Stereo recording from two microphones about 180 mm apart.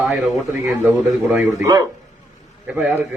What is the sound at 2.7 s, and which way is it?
Speech, 10° right (ahead or behind).